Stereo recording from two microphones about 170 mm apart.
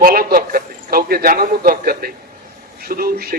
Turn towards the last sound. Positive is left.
turn(degrees=-65)  # may be behind; listen again after turning